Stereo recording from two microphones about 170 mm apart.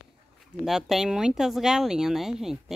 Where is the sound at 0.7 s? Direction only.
Centre (ahead or behind).